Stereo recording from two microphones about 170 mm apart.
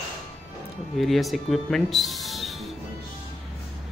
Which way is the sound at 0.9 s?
Centre (ahead or behind).